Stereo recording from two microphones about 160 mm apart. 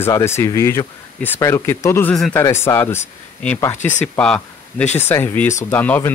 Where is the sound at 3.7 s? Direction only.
50° left (ahead or behind).